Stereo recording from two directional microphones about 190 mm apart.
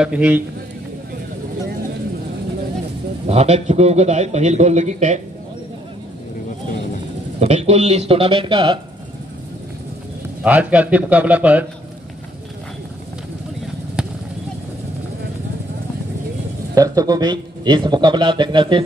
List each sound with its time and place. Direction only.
0.0 s a man's voice: 5° right (ahead or behind)
3.3 s a man's voice: 35° right (ahead or behind)
7.3 s a man's voice: 35° right (ahead or behind)
10.4 s a man's voice: 5° right (ahead or behind)
16.7 s speech: 20° right (ahead or behind)